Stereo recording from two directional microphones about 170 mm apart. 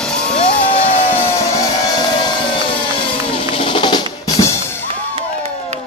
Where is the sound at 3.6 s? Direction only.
30° left (ahead or behind).